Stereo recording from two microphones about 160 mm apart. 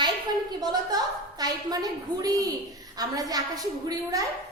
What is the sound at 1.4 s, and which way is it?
A woman's voice, 25° right (ahead or behind).